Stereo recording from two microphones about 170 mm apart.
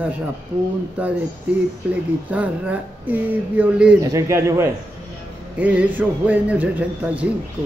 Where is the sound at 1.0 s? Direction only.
10° right (ahead or behind).